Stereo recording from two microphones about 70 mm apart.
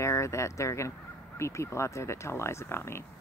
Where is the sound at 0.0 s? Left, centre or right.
Left.